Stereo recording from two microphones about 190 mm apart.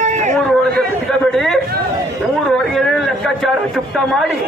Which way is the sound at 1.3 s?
Centre (ahead or behind).